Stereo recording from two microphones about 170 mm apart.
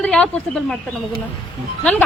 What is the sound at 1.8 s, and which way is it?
Speech, 5° left (ahead or behind).